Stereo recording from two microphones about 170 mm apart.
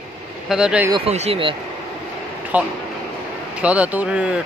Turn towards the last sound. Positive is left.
turn(degrees=-5)  # may be behind; listen again after turning